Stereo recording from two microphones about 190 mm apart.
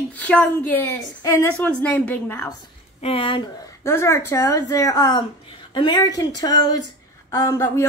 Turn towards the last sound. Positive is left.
turn(degrees=15)  # may be behind; listen again after turning